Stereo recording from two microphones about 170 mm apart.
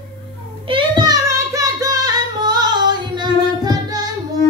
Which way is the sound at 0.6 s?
30° right (ahead or behind).